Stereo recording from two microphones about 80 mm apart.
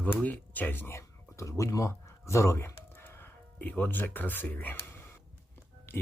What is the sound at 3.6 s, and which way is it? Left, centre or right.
Speech, left.